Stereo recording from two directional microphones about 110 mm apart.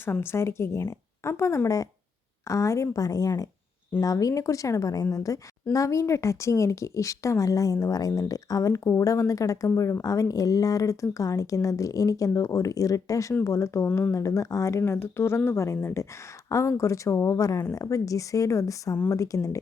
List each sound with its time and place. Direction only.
0.0 s a woman's voice: 20° left (ahead or behind)